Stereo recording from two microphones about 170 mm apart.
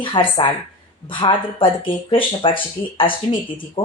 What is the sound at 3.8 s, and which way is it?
Speech, 30° left (ahead or behind).